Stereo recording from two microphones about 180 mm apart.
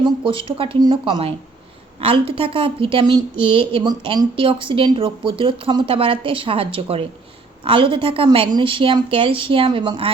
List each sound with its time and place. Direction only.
0.0 s a woman's voice: 30° right (ahead or behind)